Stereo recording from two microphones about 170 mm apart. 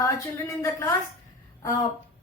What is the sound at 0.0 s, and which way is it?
Speech, 15° left (ahead or behind).